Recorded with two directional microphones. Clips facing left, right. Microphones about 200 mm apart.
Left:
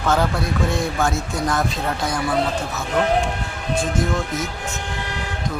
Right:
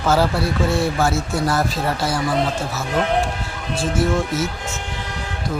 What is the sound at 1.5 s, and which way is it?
Speech, 5° right (ahead or behind).